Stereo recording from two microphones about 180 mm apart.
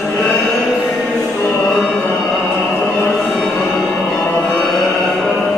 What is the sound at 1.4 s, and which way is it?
Music, 5° left (ahead or behind).